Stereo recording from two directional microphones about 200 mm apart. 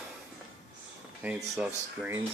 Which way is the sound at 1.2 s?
5° right (ahead or behind).